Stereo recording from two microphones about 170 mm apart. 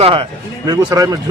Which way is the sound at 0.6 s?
20° right (ahead or behind).